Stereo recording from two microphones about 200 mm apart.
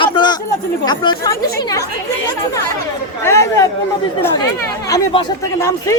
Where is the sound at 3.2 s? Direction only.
15° left (ahead or behind).